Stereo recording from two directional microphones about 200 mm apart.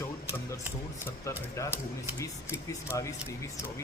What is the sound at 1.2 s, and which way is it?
A man's voice, 15° left (ahead or behind).